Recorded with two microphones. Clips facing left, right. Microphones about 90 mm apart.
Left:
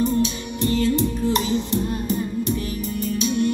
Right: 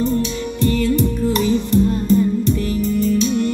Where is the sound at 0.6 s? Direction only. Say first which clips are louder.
Right 3 dB; 20° left (ahead or behind).